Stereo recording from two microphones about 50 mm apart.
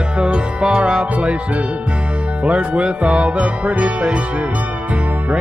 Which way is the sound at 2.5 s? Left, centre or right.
Right.